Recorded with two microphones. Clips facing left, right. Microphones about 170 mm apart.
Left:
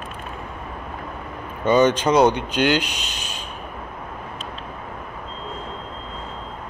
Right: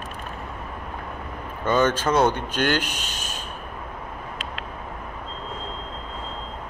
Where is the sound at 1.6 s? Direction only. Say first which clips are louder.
Left 4 dB; 15° left (ahead or behind).